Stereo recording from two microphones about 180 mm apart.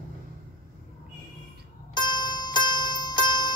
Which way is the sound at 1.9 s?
25° left (ahead or behind).